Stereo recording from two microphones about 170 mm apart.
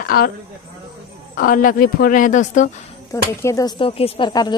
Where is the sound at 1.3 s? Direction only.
55° left (ahead or behind).